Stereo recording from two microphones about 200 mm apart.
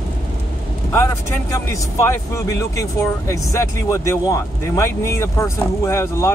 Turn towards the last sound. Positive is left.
turn(degrees=15)  # may be behind; listen again after turning